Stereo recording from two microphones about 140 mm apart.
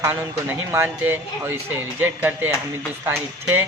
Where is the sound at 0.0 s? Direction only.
15° right (ahead or behind).